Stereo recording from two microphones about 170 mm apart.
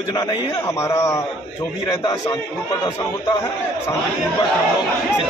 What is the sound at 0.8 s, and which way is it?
Speech, 15° left (ahead or behind).